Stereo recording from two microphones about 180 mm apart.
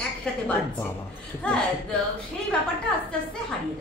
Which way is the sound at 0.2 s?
5° left (ahead or behind).